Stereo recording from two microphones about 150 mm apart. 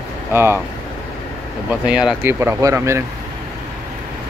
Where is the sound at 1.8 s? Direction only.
5° right (ahead or behind).